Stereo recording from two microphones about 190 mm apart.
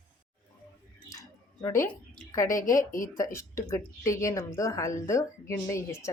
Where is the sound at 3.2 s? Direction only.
15° left (ahead or behind).